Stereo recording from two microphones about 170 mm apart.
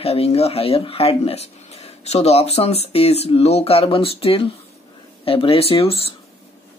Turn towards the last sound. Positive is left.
turn(degrees=35)  # may be behind; listen again after turning